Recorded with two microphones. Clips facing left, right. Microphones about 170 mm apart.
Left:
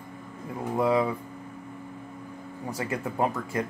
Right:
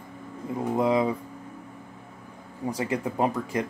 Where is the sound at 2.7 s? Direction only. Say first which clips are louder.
Right 4 dB; 15° right (ahead or behind).